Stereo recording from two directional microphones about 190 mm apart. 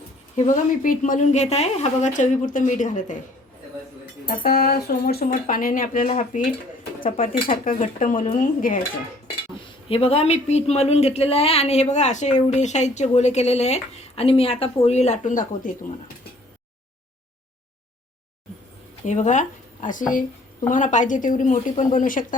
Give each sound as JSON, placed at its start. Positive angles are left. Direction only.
{"t": 0.3, "sound": "a woman's voice", "side_deg": 40}
{"t": 4.3, "sound": "speech", "side_deg": 50}
{"t": 9.9, "sound": "a woman's voice", "side_deg": 30}
{"t": 19.0, "sound": "speech", "side_deg": 40}